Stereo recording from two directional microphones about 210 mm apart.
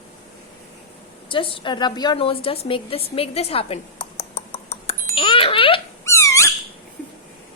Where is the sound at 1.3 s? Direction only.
25° left (ahead or behind).